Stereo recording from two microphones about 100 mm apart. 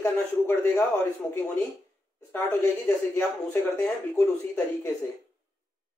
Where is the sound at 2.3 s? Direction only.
20° left (ahead or behind).